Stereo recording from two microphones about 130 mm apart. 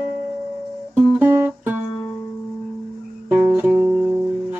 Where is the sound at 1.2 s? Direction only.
15° right (ahead or behind).